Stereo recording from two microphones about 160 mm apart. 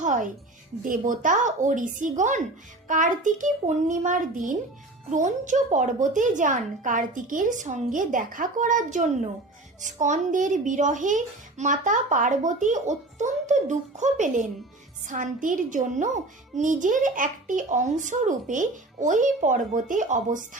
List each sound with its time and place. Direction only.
0.0 s music: 50° right (ahead or behind)
0.8 s a child's voice: 55° right (ahead or behind)